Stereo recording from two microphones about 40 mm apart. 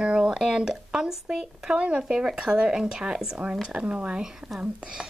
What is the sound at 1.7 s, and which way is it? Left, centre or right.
A woman's voice, right.